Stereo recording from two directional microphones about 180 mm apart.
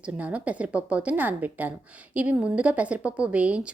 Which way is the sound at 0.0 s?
5° right (ahead or behind).